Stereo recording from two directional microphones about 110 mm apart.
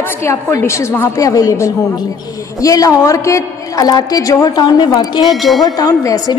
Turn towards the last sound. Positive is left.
turn(degrees=30)  # may be behind; listen again after turning